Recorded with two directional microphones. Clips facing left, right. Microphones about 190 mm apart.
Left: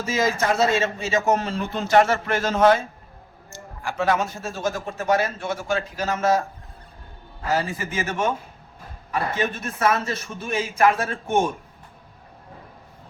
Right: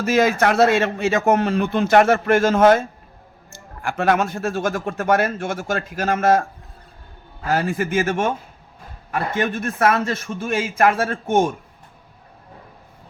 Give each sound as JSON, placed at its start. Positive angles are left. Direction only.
{"t": 0.0, "sound": "speech", "side_deg": -65}
{"t": 3.8, "sound": "speech", "side_deg": -60}
{"t": 7.5, "sound": "a man's voice", "side_deg": -55}
{"t": 9.6, "sound": "a man's voice", "side_deg": -55}